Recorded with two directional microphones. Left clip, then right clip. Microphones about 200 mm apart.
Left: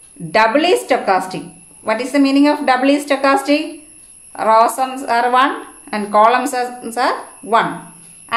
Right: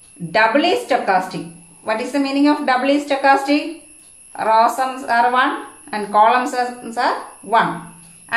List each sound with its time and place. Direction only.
0.3 s a woman's voice: 45° left (ahead or behind)